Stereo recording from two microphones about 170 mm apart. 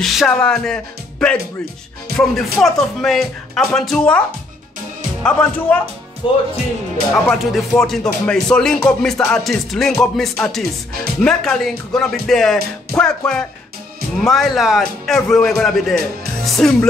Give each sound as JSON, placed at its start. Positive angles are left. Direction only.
{"t": 0.0, "sound": "speech", "side_deg": 5}
{"t": 2.1, "sound": "speech", "side_deg": 0}
{"t": 5.2, "sound": "speech", "side_deg": 5}
{"t": 6.2, "sound": "speech", "side_deg": 30}
{"t": 7.2, "sound": "speech", "side_deg": 5}